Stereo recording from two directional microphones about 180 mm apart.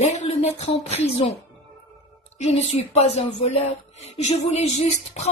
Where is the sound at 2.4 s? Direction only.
35° left (ahead or behind).